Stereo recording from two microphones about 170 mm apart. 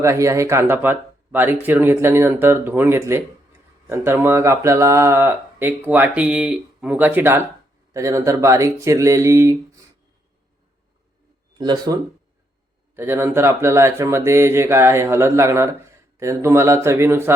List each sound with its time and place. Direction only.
0.0 s speech: 15° right (ahead or behind)
11.5 s speech: 25° right (ahead or behind)
13.0 s speech: 15° right (ahead or behind)